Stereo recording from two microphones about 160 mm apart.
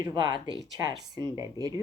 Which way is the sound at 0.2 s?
25° right (ahead or behind).